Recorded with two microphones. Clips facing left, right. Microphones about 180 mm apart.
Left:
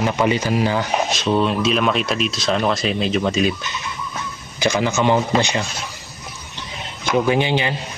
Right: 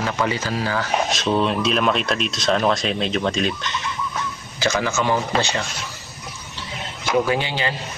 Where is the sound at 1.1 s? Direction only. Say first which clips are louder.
Left 2 dB; centre (ahead or behind); by 5.6 s 15° left (ahead or behind).